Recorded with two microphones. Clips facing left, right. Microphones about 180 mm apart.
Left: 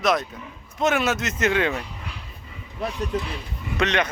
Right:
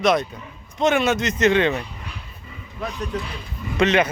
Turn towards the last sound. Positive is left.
turn(degrees=-5)  # may be behind; listen again after turning